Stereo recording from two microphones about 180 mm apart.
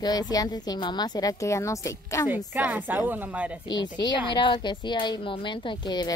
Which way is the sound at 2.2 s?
10° right (ahead or behind).